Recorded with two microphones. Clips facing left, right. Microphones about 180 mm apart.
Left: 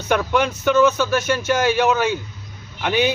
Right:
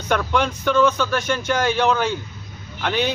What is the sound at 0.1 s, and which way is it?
Speech, 10° left (ahead or behind).